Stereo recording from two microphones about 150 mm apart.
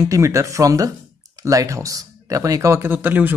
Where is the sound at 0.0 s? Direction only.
20° right (ahead or behind).